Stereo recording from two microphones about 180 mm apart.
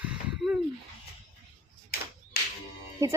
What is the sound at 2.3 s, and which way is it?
Music, 60° left (ahead or behind).